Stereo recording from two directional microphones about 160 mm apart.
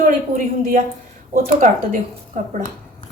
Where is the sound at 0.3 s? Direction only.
55° right (ahead or behind).